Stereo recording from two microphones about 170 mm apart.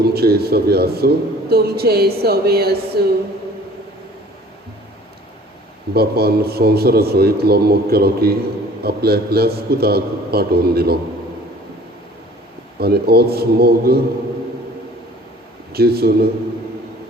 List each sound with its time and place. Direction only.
0.0 s a man's voice: 65° right (ahead or behind)
5.9 s a man's voice: 70° right (ahead or behind)
12.8 s a man's voice: 70° right (ahead or behind)
15.7 s a man's voice: 65° right (ahead or behind)